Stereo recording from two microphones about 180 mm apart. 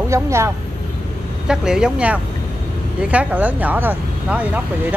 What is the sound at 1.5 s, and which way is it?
Speech, 5° right (ahead or behind).